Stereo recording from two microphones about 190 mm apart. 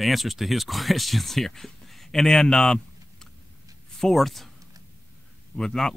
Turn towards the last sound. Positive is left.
turn(degrees=5)  # may be behind; listen again after turning